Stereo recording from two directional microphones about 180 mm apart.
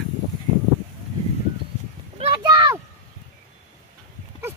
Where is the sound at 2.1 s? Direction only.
30° right (ahead or behind).